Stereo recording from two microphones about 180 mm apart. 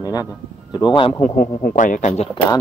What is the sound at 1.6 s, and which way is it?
Speech, 50° left (ahead or behind).